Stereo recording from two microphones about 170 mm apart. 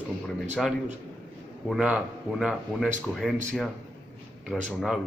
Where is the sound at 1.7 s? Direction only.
5° right (ahead or behind).